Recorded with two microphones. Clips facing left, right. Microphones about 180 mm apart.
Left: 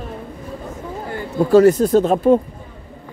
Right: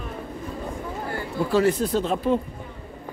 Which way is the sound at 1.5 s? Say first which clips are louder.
Left 10 dB; 45° left (ahead or behind).